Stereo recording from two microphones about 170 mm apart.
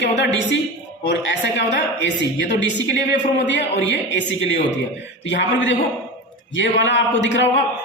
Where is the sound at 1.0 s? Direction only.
90° left.